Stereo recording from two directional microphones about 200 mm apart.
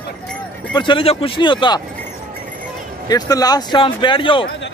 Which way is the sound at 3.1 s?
20° left (ahead or behind).